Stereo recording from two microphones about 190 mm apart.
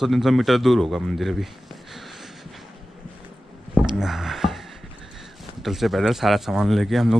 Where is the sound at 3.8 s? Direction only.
Centre (ahead or behind).